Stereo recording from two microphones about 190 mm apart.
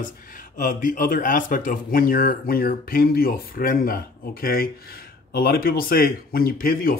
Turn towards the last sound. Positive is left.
turn(degrees=50)  # may be behind; listen again after turning